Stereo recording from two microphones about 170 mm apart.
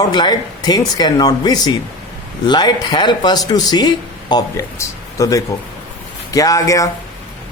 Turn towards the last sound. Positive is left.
turn(degrees=20)  # may be behind; listen again after turning